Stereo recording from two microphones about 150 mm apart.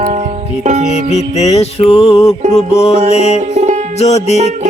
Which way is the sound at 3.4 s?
50° right (ahead or behind).